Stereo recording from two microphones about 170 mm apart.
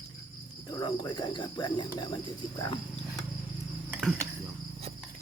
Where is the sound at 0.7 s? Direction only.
25° left (ahead or behind).